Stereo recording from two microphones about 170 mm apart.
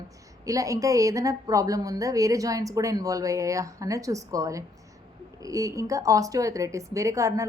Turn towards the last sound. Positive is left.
turn(degrees=-20)  # may be behind; listen again after turning